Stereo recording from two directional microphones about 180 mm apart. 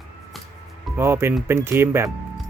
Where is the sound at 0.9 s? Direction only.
15° right (ahead or behind).